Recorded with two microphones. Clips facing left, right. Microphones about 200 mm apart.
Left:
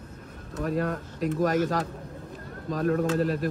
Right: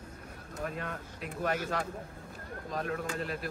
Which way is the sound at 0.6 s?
40° left (ahead or behind).